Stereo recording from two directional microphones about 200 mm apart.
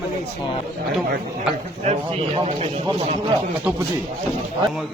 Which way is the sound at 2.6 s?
35° right (ahead or behind).